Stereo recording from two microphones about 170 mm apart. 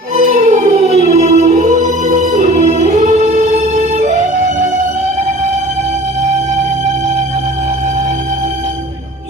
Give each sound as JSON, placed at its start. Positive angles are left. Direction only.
{"t": 0.2, "sound": "music", "side_deg": -50}